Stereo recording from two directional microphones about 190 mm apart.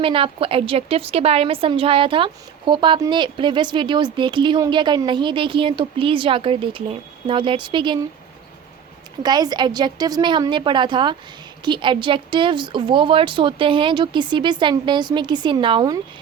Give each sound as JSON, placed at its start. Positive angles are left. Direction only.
{"t": 0.0, "sound": "a woman's voice", "side_deg": -30}
{"t": 9.2, "sound": "a woman's voice", "side_deg": -20}